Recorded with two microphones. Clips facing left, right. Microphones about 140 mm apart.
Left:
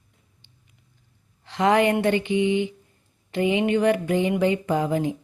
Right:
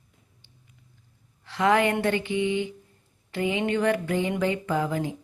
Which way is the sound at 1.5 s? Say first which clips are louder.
Left 3 dB; 20° left (ahead or behind).